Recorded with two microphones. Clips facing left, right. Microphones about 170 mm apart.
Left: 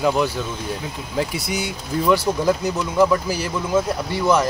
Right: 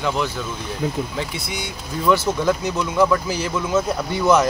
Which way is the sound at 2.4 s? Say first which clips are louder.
Left 1 dB; centre (ahead or behind).